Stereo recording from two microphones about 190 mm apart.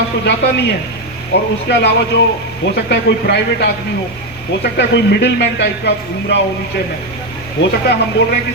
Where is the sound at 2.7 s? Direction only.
60° left (ahead or behind).